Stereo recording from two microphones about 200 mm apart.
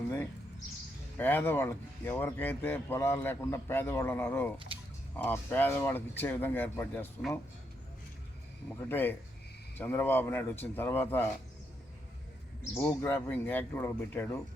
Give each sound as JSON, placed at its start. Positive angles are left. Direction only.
{"t": 1.2, "sound": "speech", "side_deg": 10}
{"t": 8.8, "sound": "speech", "side_deg": 10}
{"t": 12.7, "sound": "speech", "side_deg": 10}